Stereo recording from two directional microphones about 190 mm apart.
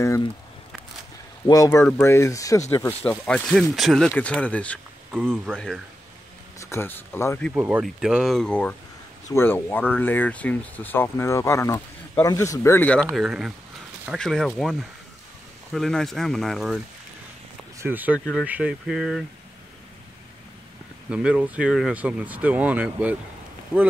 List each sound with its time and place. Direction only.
0.0 s speech: 15° left (ahead or behind)
1.4 s speech: 15° left (ahead or behind)
6.6 s speech: 15° left (ahead or behind)
7.5 s speech: 10° right (ahead or behind)
21.1 s speech: 5° right (ahead or behind)